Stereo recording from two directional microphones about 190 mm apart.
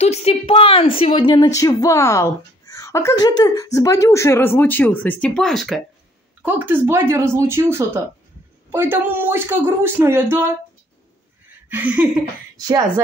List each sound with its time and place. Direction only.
0.0 s a woman's voice: 35° left (ahead or behind); by 5.8 s centre (ahead or behind)
6.4 s speech: 10° right (ahead or behind)
11.7 s speech: 10° right (ahead or behind)
12.5 s a woman's voice: 20° right (ahead or behind)